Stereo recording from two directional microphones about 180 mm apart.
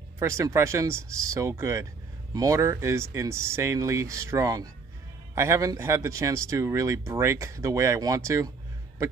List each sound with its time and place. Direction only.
0.2 s speech: 15° right (ahead or behind)